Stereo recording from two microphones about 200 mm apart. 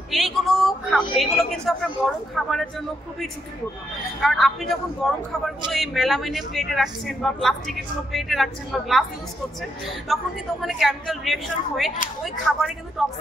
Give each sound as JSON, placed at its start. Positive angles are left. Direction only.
{"t": 0.1, "sound": "a man's voice", "side_deg": 0}
{"t": 4.2, "sound": "speech", "side_deg": 0}
{"t": 10.6, "sound": "speech", "side_deg": 0}